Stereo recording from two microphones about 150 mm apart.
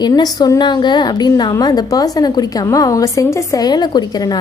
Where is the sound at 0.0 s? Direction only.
25° left (ahead or behind).